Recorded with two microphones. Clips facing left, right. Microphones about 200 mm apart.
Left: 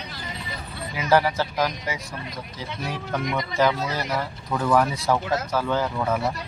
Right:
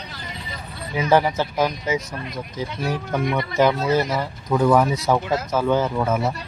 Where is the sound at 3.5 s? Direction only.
20° right (ahead or behind).